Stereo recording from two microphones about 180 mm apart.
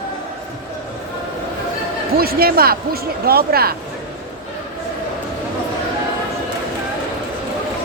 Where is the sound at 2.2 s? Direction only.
55° right (ahead or behind).